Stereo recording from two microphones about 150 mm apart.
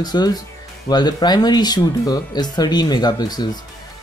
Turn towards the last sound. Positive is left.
turn(degrees=25)  # may be behind; listen again after turning